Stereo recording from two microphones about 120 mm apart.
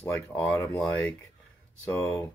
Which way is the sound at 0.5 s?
25° left (ahead or behind).